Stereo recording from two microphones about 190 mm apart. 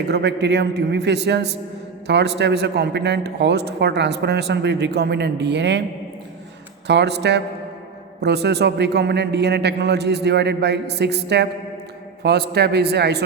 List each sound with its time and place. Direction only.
0.1 s a man's voice: 65° right (ahead or behind)
6.8 s a man's voice: 65° right (ahead or behind)